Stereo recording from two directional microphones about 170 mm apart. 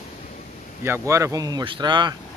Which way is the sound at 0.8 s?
15° right (ahead or behind).